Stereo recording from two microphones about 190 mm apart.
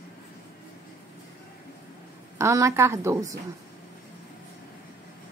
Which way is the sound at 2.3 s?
15° right (ahead or behind).